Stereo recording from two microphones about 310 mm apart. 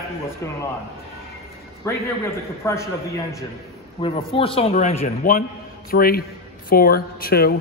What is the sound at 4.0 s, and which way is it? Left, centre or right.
A man's voice, centre.